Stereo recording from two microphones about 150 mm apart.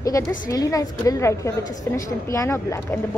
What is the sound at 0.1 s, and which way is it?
A woman's voice, 20° left (ahead or behind).